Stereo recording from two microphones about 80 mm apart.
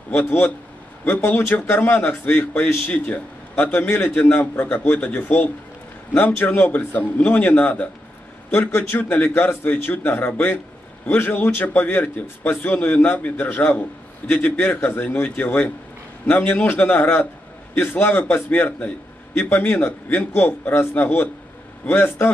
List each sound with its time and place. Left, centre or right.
0.1 s a man's voice: left